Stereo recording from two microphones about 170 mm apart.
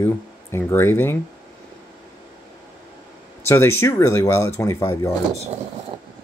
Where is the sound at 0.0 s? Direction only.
15° left (ahead or behind).